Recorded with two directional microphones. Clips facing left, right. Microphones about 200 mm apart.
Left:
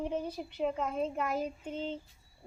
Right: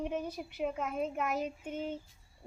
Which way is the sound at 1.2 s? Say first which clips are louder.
Left 1 dB; 5° right (ahead or behind).